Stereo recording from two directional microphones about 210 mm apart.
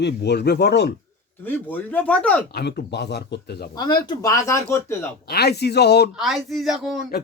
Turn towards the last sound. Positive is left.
turn(degrees=0)  # may be behind; listen again after turning